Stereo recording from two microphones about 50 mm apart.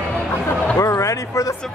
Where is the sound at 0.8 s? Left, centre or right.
Left.